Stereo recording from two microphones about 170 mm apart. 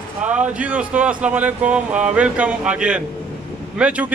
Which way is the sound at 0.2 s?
10° right (ahead or behind).